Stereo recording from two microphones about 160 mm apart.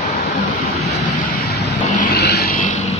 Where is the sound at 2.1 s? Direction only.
75° left (ahead or behind).